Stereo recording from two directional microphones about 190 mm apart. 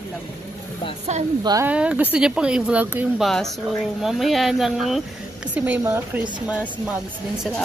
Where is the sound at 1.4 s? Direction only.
20° right (ahead or behind).